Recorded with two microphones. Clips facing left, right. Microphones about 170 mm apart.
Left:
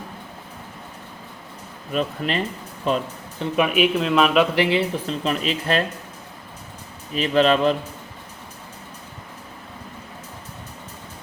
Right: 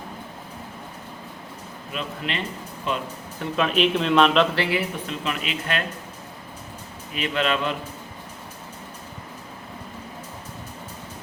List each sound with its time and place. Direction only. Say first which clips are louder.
1.9 s speech: left 7 dB; 40° left (ahead or behind)
3.5 s speech: left 2 dB; 10° left (ahead or behind)
4.5 s speech: left 5 dB; 20° left (ahead or behind)
7.1 s speech: left 7 dB; 35° left (ahead or behind)